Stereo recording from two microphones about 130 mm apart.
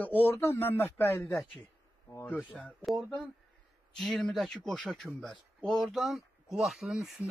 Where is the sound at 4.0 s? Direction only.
5° left (ahead or behind).